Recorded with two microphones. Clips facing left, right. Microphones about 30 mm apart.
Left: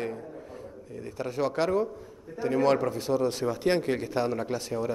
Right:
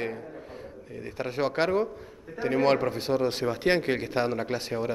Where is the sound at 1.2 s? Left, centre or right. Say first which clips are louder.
Right 1 dB; right.